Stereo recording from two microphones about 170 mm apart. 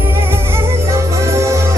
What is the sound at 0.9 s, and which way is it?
Music, 20° right (ahead or behind).